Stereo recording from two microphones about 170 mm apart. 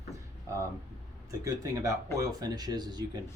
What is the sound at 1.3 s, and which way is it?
Speech, 20° right (ahead or behind).